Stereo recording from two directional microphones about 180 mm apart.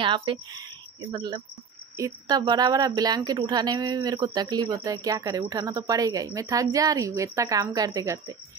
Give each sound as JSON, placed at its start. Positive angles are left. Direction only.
{"t": 0.0, "sound": "a woman's voice", "side_deg": -25}